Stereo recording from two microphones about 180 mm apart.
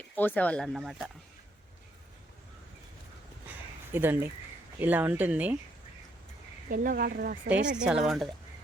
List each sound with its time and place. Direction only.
0.2 s speech: 10° left (ahead or behind)
3.9 s speech: 10° right (ahead or behind)
6.7 s speech: 55° right (ahead or behind)
7.8 s speech: 5° right (ahead or behind)